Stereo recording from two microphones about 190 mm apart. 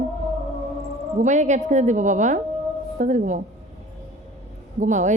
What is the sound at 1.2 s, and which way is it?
A woman's voice, 40° right (ahead or behind).